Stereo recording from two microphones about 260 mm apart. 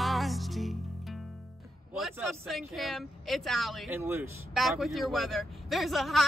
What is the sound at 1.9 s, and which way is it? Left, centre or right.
A man's voice, centre.